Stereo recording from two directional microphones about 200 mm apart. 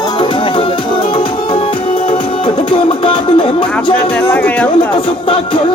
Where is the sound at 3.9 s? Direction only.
5° left (ahead or behind).